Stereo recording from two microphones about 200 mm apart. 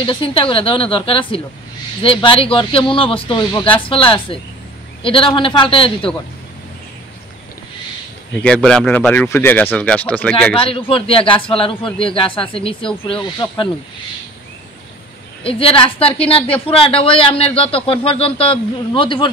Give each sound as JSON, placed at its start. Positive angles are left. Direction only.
{"t": 0.0, "sound": "a woman's voice", "side_deg": 25}
{"t": 8.4, "sound": "speech", "side_deg": 5}
{"t": 10.5, "sound": "a woman's voice", "side_deg": 25}
{"t": 15.4, "sound": "a woman's voice", "side_deg": 25}